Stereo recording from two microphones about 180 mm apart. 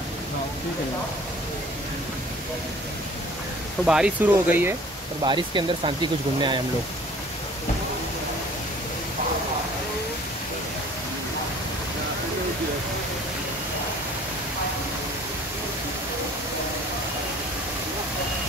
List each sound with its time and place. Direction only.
3.8 s speech: 5° right (ahead or behind)
5.2 s speech: 25° right (ahead or behind)